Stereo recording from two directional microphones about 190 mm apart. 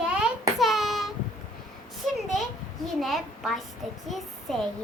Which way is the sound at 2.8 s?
Centre (ahead or behind).